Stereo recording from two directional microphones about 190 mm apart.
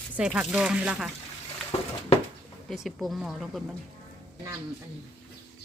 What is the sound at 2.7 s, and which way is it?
Speech, centre (ahead or behind).